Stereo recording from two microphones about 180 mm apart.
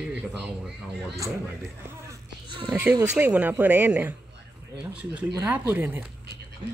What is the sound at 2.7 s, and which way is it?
Speech, 5° right (ahead or behind).